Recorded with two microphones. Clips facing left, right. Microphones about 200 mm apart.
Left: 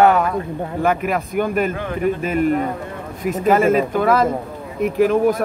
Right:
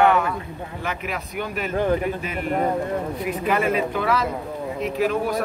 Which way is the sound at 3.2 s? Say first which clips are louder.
Left 10 dB; 45° left (ahead or behind).